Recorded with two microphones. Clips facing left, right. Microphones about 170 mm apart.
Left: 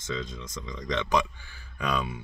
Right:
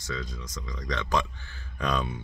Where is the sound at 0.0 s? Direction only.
20° left (ahead or behind); by 2.2 s 5° left (ahead or behind).